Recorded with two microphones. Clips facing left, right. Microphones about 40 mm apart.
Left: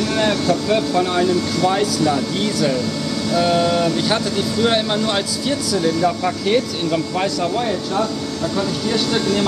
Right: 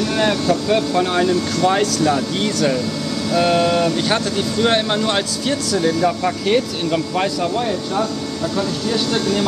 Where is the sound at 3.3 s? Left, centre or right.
Right.